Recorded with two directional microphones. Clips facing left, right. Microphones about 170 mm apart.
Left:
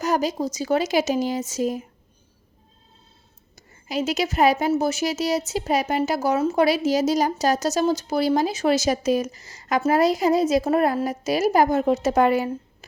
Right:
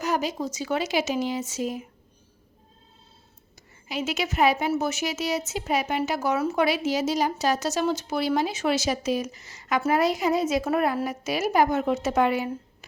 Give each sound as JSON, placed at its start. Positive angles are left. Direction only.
{"t": 0.0, "sound": "a woman's voice", "side_deg": 40}
{"t": 3.5, "sound": "a woman's voice", "side_deg": 40}